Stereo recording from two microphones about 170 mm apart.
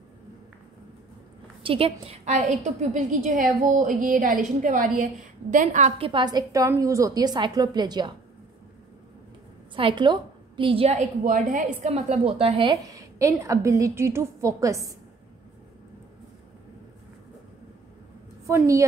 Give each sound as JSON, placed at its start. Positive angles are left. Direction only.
{"t": 1.6, "sound": "a woman's voice", "side_deg": -30}
{"t": 9.8, "sound": "a woman's voice", "side_deg": -30}
{"t": 12.8, "sound": "a woman's voice", "side_deg": -20}
{"t": 18.5, "sound": "a woman's voice", "side_deg": -20}